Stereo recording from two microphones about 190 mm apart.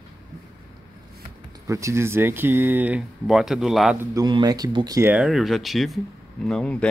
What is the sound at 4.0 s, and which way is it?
Speech, 20° right (ahead or behind).